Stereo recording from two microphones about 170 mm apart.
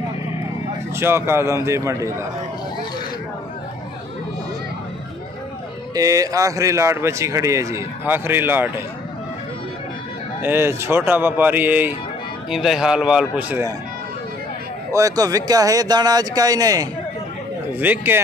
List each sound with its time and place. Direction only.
0.9 s speech: 15° right (ahead or behind)
5.9 s speech: 20° right (ahead or behind)
10.4 s a man's voice: 15° right (ahead or behind)
14.9 s speech: 20° right (ahead or behind)